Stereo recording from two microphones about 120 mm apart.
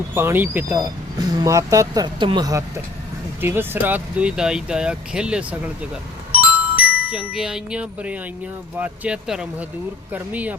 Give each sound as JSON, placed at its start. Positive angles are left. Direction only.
{"t": 0.1, "sound": "speech", "side_deg": -20}
{"t": 6.4, "sound": "music", "side_deg": -10}
{"t": 8.8, "sound": "speech", "side_deg": -5}